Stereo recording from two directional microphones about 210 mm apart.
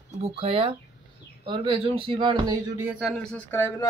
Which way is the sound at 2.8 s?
Centre (ahead or behind).